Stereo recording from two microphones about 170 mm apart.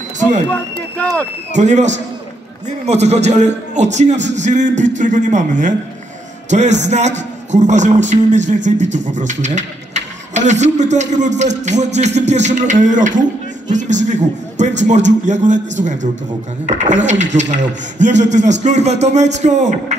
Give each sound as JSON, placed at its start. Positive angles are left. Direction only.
{"t": 0.5, "sound": "speech", "side_deg": 10}
{"t": 1.5, "sound": "a man's voice", "side_deg": -45}